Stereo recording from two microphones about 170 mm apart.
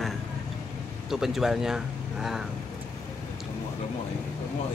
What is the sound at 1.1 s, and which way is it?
Speech, centre (ahead or behind).